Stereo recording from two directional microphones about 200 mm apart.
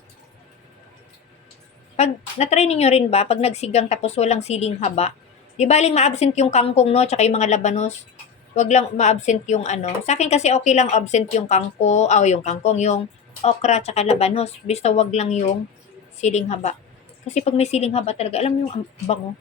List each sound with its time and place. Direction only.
2.0 s a woman's voice: 35° left (ahead or behind)